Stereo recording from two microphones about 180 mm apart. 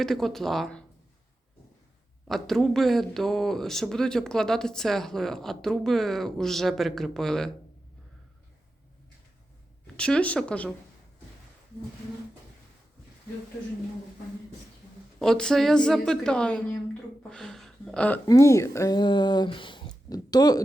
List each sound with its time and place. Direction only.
0.0 s a man's voice: centre (ahead or behind)
2.2 s a man's voice: centre (ahead or behind)
9.8 s speech: 5° left (ahead or behind)
15.2 s a man's voice: 5° left (ahead or behind)
18.3 s speech: 15° left (ahead or behind)